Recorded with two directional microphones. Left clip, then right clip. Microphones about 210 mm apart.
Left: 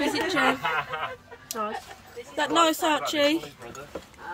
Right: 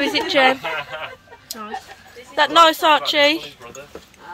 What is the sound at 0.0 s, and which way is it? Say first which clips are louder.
Speech: right 6 dB; 10° right (ahead or behind).